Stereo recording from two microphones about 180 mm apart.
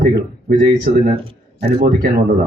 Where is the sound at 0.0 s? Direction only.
65° right (ahead or behind).